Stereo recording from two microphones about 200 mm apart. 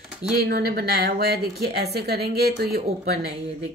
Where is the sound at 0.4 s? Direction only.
50° right (ahead or behind).